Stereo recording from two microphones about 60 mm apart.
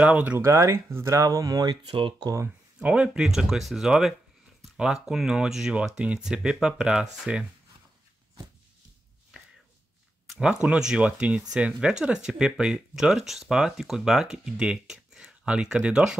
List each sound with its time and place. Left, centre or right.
0.0 s speech: right
0.4 s speech: right
1.0 s speech: right
2.8 s speech: centre
3.3 s speech: centre
10.3 s speech: centre